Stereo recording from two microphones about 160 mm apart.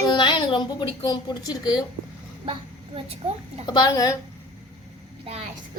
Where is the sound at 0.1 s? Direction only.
30° left (ahead or behind).